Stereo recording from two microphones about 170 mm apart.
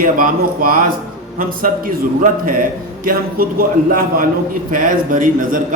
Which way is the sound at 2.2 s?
55° right (ahead or behind).